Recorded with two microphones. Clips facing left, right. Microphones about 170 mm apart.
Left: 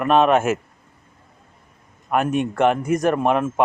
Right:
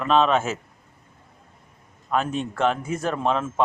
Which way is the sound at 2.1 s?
15° left (ahead or behind).